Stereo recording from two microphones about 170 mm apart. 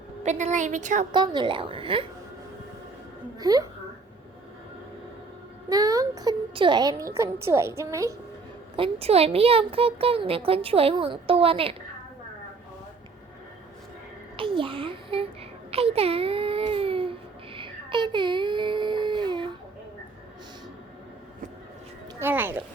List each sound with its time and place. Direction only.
0.2 s a woman's voice: 40° right (ahead or behind)
1.1 s speech: 25° right (ahead or behind)
3.3 s a woman's voice: 20° right (ahead or behind)
5.6 s a woman's voice: 20° right (ahead or behind)
8.7 s speech: 35° right (ahead or behind)
14.3 s a sound: 30° right (ahead or behind)
15.7 s baby cry: 35° right (ahead or behind)
22.2 s music: 15° right (ahead or behind)